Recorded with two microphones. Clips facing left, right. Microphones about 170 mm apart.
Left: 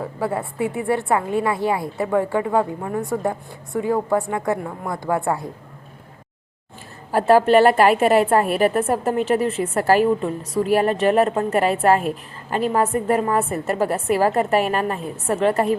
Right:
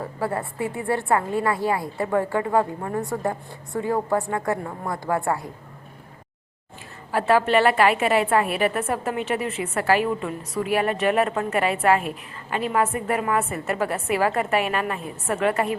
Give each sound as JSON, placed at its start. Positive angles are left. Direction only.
{"t": 0.2, "sound": "a woman's voice", "side_deg": 15}
{"t": 7.1, "sound": "a woman's voice", "side_deg": 40}